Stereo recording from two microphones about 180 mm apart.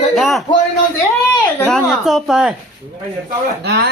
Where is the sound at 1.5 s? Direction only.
10° left (ahead or behind).